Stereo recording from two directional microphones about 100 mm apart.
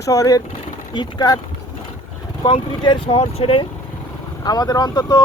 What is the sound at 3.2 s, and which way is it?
Speech, 70° left (ahead or behind).